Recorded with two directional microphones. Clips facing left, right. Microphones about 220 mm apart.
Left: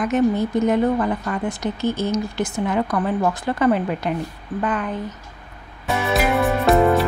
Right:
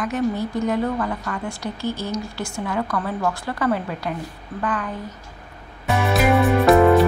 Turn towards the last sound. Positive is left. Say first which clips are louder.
# right 2 dB
turn(degrees=0)  # may be behind; listen again after turning